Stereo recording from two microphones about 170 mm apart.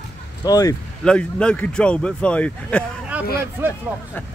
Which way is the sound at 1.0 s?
5° left (ahead or behind).